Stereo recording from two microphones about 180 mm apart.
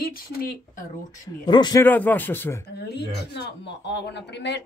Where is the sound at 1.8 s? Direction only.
10° left (ahead or behind).